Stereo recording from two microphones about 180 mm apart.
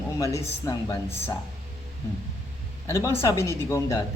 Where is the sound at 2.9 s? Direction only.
15° left (ahead or behind).